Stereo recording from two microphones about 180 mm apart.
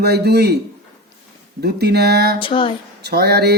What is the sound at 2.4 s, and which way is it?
Female singing, 30° left (ahead or behind).